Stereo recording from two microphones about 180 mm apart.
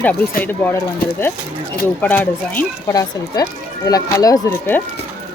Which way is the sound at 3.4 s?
20° left (ahead or behind).